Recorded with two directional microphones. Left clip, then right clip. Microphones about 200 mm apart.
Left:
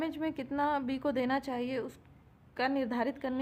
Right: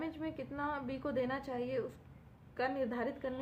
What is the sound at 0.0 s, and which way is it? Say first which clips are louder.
A woman's voice: left 6 dB; 55° left (ahead or behind).